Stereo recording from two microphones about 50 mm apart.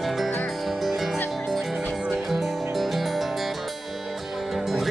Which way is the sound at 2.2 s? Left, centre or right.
Centre.